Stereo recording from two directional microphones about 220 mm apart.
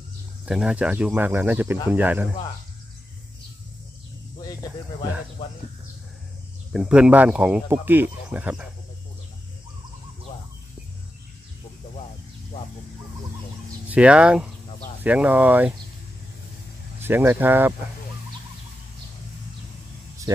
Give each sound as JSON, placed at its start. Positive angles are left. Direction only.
{"t": 0.5, "sound": "speech", "side_deg": -5}
{"t": 6.7, "sound": "speech", "side_deg": -5}
{"t": 13.8, "sound": "speech", "side_deg": -5}
{"t": 14.7, "sound": "a sound", "side_deg": 30}
{"t": 15.0, "sound": "speech", "side_deg": -5}
{"t": 17.0, "sound": "speech", "side_deg": -10}
{"t": 20.3, "sound": "a sound", "side_deg": -15}